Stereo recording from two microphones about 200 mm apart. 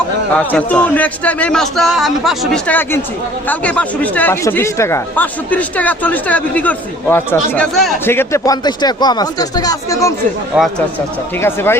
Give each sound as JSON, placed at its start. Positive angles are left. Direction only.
{"t": 0.3, "sound": "speech", "side_deg": 5}
{"t": 10.5, "sound": "speech", "side_deg": 0}
{"t": 11.3, "sound": "speech", "side_deg": 10}